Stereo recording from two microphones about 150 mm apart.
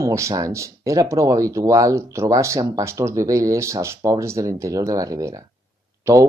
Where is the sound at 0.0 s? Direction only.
20° right (ahead or behind).